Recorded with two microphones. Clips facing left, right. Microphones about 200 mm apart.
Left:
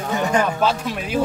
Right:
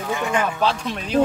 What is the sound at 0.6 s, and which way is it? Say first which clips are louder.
Speech: left 2 dB; 5° left (ahead or behind).